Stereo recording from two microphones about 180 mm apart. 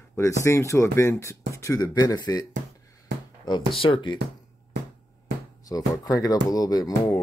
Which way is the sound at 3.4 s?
25° left (ahead or behind).